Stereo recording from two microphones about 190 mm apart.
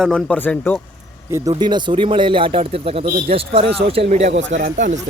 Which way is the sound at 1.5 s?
25° right (ahead or behind).